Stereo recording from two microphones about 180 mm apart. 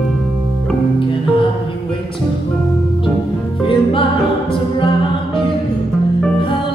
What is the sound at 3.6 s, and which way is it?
Music, 30° left (ahead or behind).